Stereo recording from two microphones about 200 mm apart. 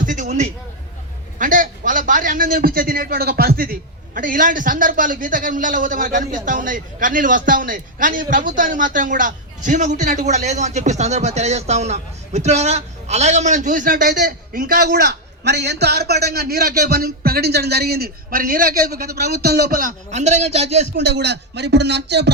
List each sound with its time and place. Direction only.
0.0 s a sound: 40° right (ahead or behind)
1.4 s a man's voice: 40° right (ahead or behind)
20.9 s speech: 55° right (ahead or behind)